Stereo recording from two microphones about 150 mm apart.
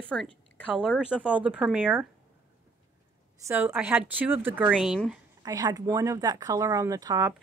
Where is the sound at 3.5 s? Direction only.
10° right (ahead or behind).